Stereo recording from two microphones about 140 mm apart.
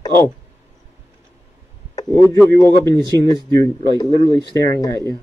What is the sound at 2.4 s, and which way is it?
A man's voice, 20° left (ahead or behind).